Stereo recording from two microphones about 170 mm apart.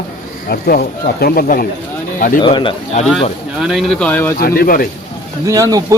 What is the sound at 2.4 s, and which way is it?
Speech, 30° left (ahead or behind).